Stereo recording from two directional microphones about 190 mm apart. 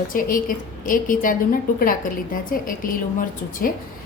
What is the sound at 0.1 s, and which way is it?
A woman's voice, 45° left (ahead or behind).